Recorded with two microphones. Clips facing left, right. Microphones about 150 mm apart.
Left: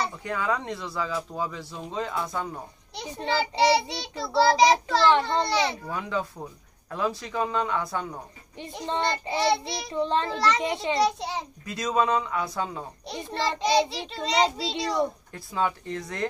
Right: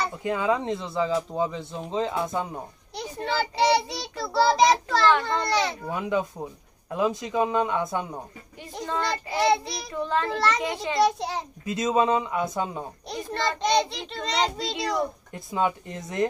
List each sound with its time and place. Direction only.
0.2 s speech: 20° right (ahead or behind)
2.9 s child singing: centre (ahead or behind)
5.9 s speech: 20° right (ahead or behind)
8.8 s a child's voice: 25° left (ahead or behind)
9.4 s child singing: centre (ahead or behind)
9.8 s a child's voice: 25° left (ahead or behind)
10.3 s child singing: centre (ahead or behind)
10.6 s a child's voice: 25° left (ahead or behind)
11.0 s child singing: centre (ahead or behind)
11.6 s speech: 20° right (ahead or behind)
13.1 s child singing: centre (ahead or behind)
15.3 s speech: 20° right (ahead or behind)